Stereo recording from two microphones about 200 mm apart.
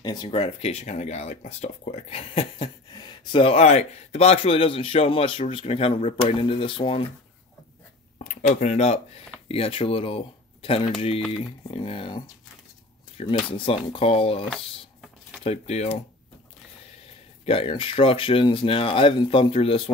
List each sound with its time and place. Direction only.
0.0 s speech: 20° left (ahead or behind)
8.2 s speech: 35° left (ahead or behind)
15.4 s speech: 30° left (ahead or behind)
17.5 s speech: 25° left (ahead or behind)